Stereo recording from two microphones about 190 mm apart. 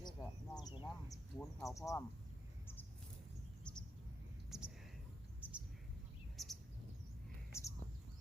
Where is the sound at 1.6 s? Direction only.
15° left (ahead or behind).